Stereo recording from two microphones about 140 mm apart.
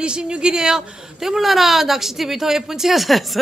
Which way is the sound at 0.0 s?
5° right (ahead or behind).